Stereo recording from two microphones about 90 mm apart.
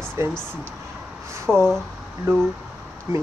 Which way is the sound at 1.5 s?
10° left (ahead or behind).